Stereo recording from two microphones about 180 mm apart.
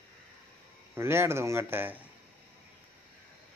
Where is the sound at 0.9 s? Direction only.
15° right (ahead or behind).